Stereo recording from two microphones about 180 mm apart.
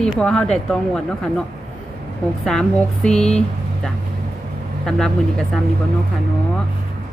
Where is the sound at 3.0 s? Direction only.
5° left (ahead or behind).